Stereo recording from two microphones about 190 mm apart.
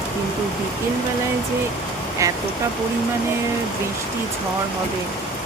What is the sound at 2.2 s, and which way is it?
Speech, 15° right (ahead or behind).